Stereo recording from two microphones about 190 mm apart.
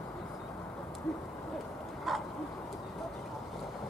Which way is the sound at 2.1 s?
Centre (ahead or behind).